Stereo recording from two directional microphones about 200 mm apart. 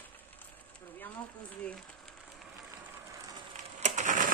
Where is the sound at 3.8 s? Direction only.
40° right (ahead or behind).